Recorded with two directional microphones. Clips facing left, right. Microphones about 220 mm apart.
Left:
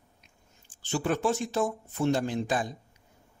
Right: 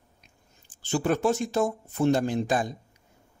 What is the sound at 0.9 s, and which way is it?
Speech, 40° right (ahead or behind).